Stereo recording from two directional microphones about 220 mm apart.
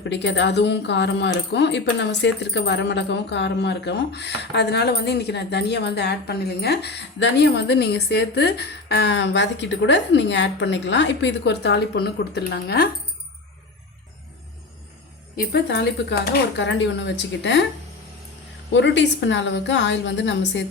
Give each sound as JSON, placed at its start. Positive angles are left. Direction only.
{"t": 0.0, "sound": "speech", "side_deg": 55}
{"t": 15.4, "sound": "speech", "side_deg": 50}
{"t": 18.7, "sound": "a woman's voice", "side_deg": 55}